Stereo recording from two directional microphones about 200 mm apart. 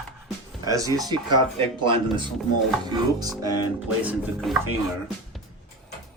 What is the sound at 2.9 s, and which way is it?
Music, 20° right (ahead or behind).